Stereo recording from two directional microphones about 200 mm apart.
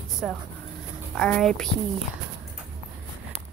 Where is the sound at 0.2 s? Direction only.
5° left (ahead or behind).